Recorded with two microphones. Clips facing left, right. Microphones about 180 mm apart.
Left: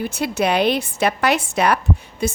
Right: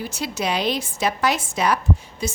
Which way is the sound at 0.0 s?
60° left (ahead or behind).